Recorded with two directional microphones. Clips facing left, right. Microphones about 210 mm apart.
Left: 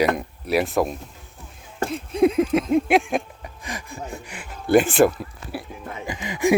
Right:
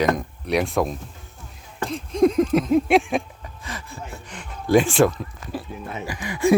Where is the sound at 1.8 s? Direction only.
5° left (ahead or behind).